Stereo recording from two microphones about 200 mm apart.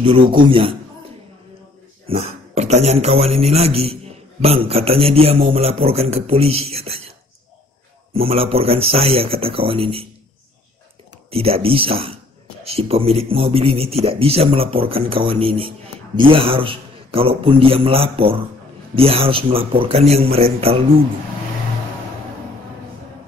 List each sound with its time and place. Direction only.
0.0 s a man's voice: 25° right (ahead or behind)
2.0 s a man's voice: 30° right (ahead or behind)
8.1 s a man's voice: 30° right (ahead or behind)
11.2 s a man's voice: 30° right (ahead or behind)